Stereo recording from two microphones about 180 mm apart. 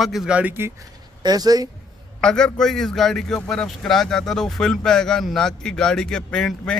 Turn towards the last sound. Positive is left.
turn(degrees=5)  # may be behind; listen again after turning